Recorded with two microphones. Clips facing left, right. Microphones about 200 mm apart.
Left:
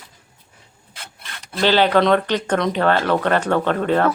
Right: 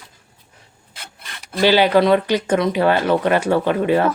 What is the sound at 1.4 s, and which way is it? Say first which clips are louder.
Speech: right 2 dB; 10° right (ahead or behind).